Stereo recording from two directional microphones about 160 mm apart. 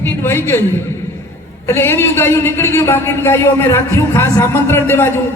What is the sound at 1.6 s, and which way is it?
A man's voice, 15° left (ahead or behind).